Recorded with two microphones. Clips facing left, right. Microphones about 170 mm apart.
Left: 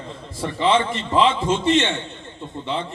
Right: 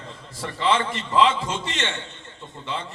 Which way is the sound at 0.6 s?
25° left (ahead or behind).